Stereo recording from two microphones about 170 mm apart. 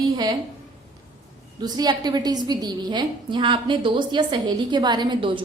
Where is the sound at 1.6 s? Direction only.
25° right (ahead or behind).